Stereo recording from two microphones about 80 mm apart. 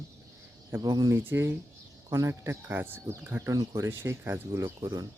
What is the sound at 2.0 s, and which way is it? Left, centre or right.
Speech, right.